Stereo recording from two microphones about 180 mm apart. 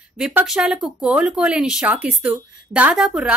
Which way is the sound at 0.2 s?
5° right (ahead or behind).